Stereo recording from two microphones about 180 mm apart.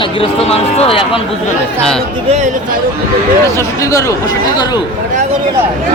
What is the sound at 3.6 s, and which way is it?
Speech, 15° left (ahead or behind).